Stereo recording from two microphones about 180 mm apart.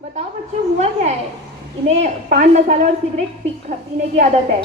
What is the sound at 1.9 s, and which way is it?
A woman's voice, 40° right (ahead or behind).